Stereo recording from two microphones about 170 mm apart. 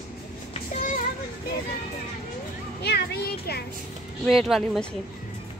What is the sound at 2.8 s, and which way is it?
Speech, 70° left (ahead or behind).